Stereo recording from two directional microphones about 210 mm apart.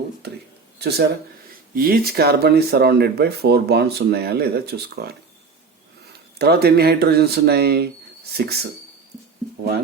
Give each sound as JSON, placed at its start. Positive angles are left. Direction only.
{"t": 0.8, "sound": "speech", "side_deg": -50}
{"t": 6.4, "sound": "speech", "side_deg": -50}